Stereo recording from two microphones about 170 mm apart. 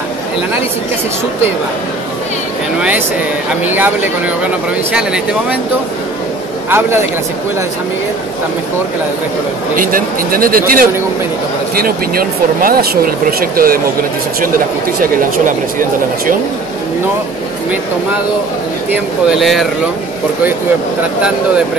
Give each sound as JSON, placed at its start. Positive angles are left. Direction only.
{"t": 3.6, "sound": "speech", "side_deg": -10}
{"t": 6.7, "sound": "speech", "side_deg": -15}
{"t": 9.8, "sound": "speech", "side_deg": -55}
{"t": 19.4, "sound": "speech", "side_deg": 0}